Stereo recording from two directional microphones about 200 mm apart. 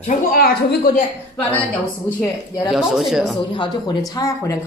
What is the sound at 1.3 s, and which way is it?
Speech, 5° left (ahead or behind).